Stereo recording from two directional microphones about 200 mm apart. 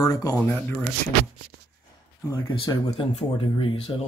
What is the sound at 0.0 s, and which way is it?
Speech, 20° left (ahead or behind).